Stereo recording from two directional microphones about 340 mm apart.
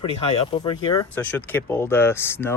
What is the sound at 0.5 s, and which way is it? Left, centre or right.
Speech, centre.